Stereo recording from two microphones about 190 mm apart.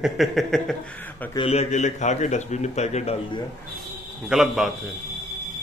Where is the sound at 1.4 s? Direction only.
35° left (ahead or behind).